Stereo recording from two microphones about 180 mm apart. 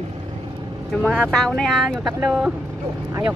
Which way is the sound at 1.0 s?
5° left (ahead or behind).